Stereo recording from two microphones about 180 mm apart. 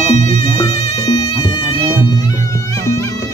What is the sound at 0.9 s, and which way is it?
Music, 20° left (ahead or behind).